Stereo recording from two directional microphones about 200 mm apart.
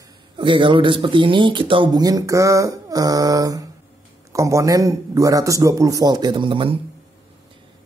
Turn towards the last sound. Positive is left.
turn(degrees=-25)  # may be behind; listen again after turning